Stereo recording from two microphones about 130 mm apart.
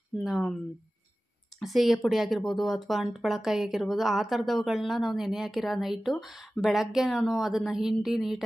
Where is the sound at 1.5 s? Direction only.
Centre (ahead or behind).